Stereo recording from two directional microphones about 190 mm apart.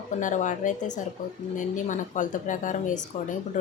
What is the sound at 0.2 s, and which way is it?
Speech, 40° left (ahead or behind).